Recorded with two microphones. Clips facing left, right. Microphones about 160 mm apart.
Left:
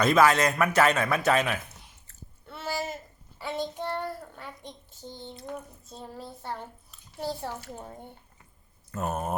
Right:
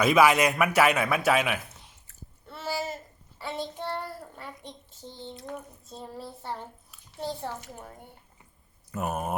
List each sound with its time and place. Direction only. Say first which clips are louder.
0.0 s a man's voice: right 1 dB; 10° right (ahead or behind)
2.5 s a sound: even; centre (ahead or behind)
7.7 s a woman's voice: left 3 dB; 20° left (ahead or behind)
8.9 s speech: even; 10° right (ahead or behind)